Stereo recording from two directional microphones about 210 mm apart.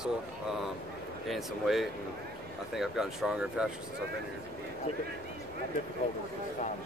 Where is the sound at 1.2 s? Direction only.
Centre (ahead or behind).